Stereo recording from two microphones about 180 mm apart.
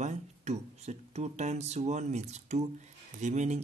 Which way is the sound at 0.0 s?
40° right (ahead or behind).